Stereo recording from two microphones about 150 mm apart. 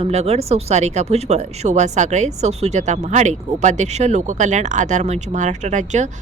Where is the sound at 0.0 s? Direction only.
45° right (ahead or behind).